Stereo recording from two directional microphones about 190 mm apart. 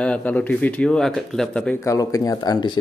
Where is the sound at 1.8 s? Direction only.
15° left (ahead or behind).